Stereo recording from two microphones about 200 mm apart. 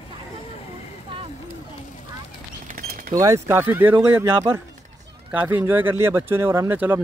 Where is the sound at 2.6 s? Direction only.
45° right (ahead or behind).